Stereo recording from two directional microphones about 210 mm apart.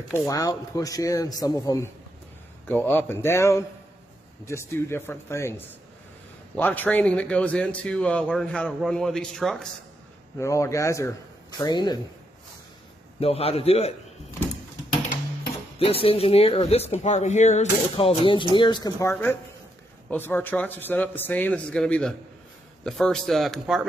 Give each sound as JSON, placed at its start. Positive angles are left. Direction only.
{"t": 0.1, "sound": "a man's voice", "side_deg": 15}
{"t": 10.3, "sound": "speech", "side_deg": 15}
{"t": 13.2, "sound": "speech", "side_deg": 30}
{"t": 15.8, "sound": "a man's voice", "side_deg": 25}